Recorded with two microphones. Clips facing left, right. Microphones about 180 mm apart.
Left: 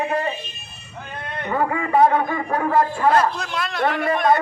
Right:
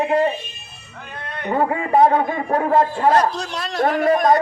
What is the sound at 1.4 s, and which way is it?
A man's voice, 30° right (ahead or behind).